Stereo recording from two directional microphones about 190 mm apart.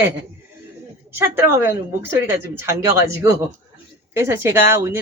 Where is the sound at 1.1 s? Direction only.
15° right (ahead or behind).